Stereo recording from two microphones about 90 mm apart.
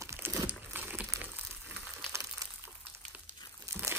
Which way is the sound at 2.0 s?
35° right (ahead or behind).